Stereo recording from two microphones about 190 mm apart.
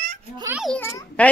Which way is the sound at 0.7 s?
10° left (ahead or behind).